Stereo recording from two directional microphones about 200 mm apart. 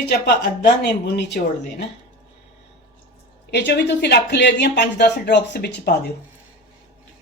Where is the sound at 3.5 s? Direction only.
60° left (ahead or behind).